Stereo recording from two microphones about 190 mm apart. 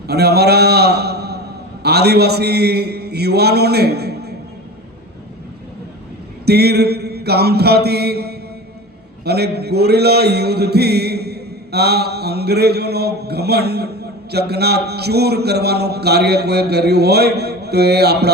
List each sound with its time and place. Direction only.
0.1 s a man's voice: 60° right (ahead or behind)
6.4 s mantra: 60° right (ahead or behind)
9.2 s a man's voice: 60° right (ahead or behind)